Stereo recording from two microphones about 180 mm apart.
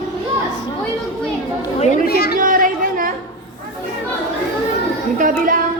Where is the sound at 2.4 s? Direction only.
50° right (ahead or behind).